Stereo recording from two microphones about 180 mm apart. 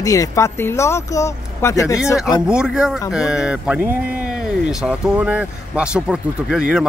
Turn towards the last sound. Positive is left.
turn(degrees=-5)  # may be behind; listen again after turning